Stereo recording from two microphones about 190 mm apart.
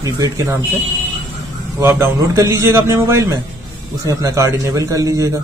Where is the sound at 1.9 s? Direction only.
15° right (ahead or behind).